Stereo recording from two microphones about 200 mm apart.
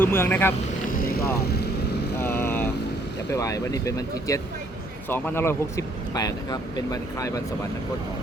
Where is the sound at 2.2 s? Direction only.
10° left (ahead or behind).